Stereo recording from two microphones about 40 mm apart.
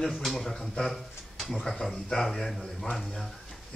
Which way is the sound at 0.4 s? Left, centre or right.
Centre.